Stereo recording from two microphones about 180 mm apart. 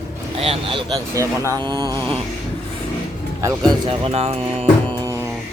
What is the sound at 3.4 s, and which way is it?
Speech, 20° right (ahead or behind).